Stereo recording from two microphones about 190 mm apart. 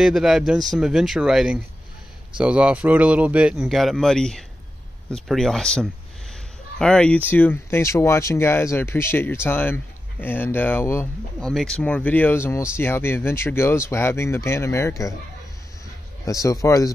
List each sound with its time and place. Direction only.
0.0 s speech: centre (ahead or behind); by 15.1 s 15° left (ahead or behind)
16.3 s speech: 15° left (ahead or behind)